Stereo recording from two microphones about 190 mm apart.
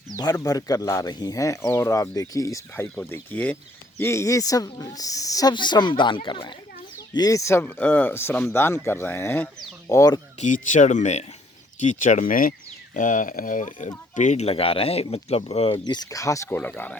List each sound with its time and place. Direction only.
0.2 s speech: 20° left (ahead or behind)
10.4 s speech: 40° left (ahead or behind); by 17.0 s 10° left (ahead or behind)